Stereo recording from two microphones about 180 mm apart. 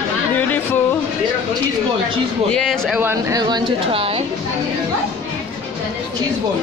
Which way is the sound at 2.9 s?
10° right (ahead or behind).